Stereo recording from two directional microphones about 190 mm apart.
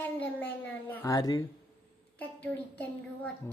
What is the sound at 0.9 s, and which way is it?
Speech, 20° left (ahead or behind).